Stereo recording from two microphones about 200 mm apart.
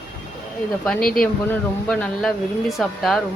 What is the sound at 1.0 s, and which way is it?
Speech, 45° left (ahead or behind).